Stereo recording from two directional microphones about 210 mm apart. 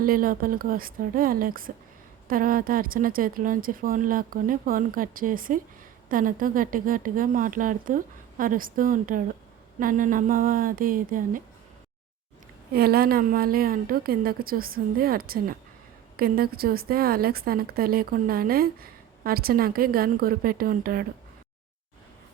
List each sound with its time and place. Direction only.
0.0 s a woman's voice: 40° right (ahead or behind)
12.7 s a woman's voice: 45° right (ahead or behind)